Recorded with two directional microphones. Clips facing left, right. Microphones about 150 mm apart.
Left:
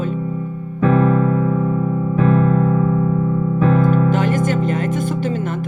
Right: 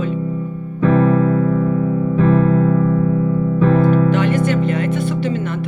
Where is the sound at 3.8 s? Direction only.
45° left (ahead or behind).